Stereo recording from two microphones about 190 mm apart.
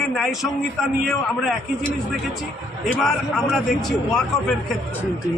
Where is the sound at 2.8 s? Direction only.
Centre (ahead or behind).